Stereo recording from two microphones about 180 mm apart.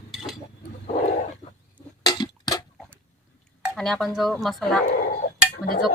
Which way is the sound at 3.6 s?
Centre (ahead or behind).